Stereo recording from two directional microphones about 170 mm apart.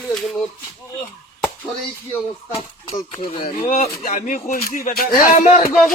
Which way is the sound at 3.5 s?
45° left (ahead or behind).